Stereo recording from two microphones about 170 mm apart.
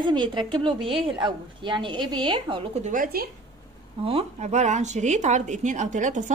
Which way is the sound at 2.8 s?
55° right (ahead or behind).